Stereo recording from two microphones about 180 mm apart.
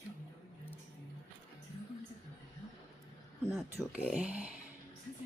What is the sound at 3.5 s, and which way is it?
Speech, centre (ahead or behind).